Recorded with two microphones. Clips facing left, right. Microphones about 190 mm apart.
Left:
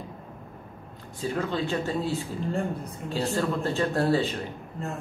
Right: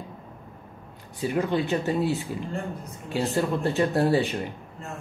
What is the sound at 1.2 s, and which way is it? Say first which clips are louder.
Speech: right 3 dB; 15° right (ahead or behind).